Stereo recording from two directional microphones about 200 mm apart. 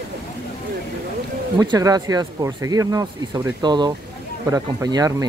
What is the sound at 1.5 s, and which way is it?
Speech, 20° right (ahead or behind).